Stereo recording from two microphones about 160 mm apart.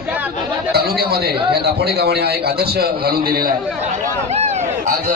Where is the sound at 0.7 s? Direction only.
75° right (ahead or behind).